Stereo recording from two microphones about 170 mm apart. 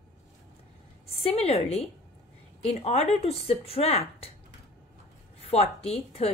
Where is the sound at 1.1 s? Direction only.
35° left (ahead or behind).